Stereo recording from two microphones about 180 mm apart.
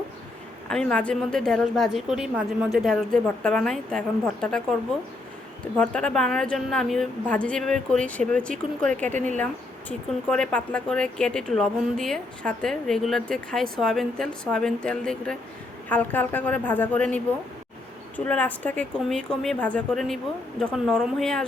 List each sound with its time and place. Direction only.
0.7 s speech: 5° left (ahead or behind)
5.7 s speech: 5° left (ahead or behind)
9.1 s speech: 45° right (ahead or behind)
10.2 s speech: 5° left (ahead or behind)
18.3 s speech: 10° left (ahead or behind)